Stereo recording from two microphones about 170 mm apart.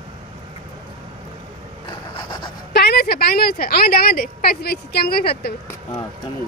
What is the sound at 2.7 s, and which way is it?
A woman's voice, 70° left (ahead or behind).